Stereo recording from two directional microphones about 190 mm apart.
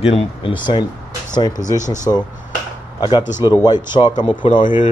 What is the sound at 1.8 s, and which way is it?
Speech, 20° left (ahead or behind).